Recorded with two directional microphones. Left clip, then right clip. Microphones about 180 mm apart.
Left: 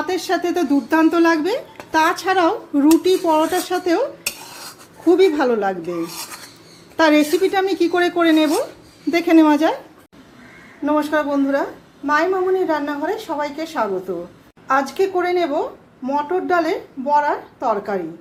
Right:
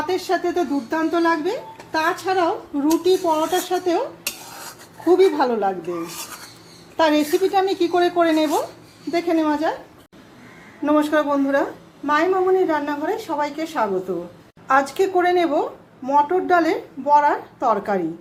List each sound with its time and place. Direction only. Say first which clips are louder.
0.1 s speech: left 1 dB; 35° left (ahead or behind)
5.0 s a woman's voice: left 1 dB; 20° left (ahead or behind)
6.9 s a woman's voice: left 3 dB; 25° left (ahead or behind)
9.1 s a woman's voice: left 6 dB; 40° left (ahead or behind)
10.8 s a woman's voice: even; centre (ahead or behind)